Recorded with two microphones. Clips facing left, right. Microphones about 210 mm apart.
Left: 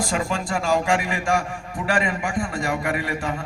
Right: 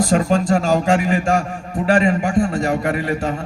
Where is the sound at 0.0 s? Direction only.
40° right (ahead or behind).